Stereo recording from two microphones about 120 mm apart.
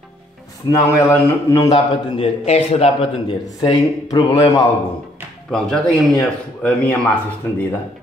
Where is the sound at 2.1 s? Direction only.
60° left (ahead or behind).